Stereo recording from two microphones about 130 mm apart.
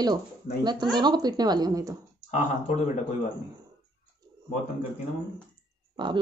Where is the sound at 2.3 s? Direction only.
60° left (ahead or behind).